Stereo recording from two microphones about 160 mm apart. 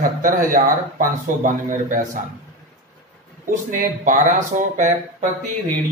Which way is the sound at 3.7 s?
55° right (ahead or behind).